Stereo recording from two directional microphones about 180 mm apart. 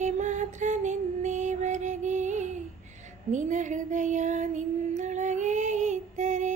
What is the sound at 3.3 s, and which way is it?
Female singing, 45° right (ahead or behind).